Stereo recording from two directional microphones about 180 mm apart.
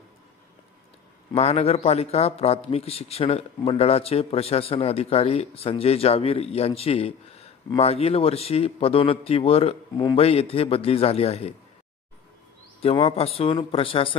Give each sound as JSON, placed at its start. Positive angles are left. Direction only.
{"t": 1.3, "sound": "a man's voice", "side_deg": 35}
{"t": 12.8, "sound": "a man's voice", "side_deg": 35}